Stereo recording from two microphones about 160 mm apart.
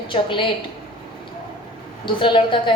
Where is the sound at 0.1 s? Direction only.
30° left (ahead or behind).